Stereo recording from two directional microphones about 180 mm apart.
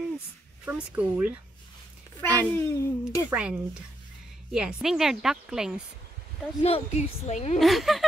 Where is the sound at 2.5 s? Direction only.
15° left (ahead or behind).